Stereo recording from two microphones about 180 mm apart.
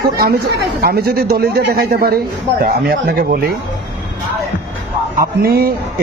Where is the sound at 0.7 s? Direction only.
60° right (ahead or behind).